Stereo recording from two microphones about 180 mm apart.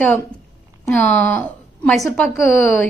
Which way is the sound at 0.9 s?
10° left (ahead or behind).